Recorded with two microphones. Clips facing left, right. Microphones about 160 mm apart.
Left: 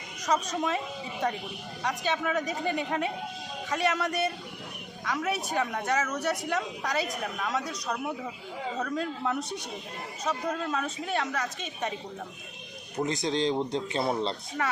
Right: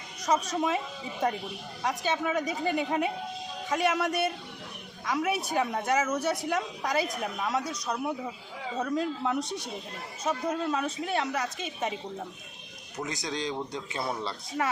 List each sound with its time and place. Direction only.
0.3 s a woman's voice: 5° right (ahead or behind)
1.8 s a woman's voice: 5° right (ahead or behind)
13.2 s speech: 25° left (ahead or behind)
14.6 s a woman's voice: 10° right (ahead or behind)